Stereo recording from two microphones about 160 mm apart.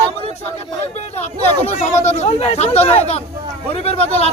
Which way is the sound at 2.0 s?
45° left (ahead or behind).